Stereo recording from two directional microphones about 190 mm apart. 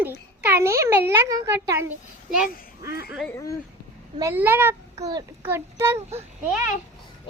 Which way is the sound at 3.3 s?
15° left (ahead or behind).